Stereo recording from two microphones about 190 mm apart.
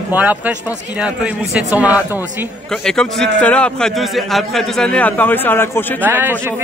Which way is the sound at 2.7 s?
5° left (ahead or behind).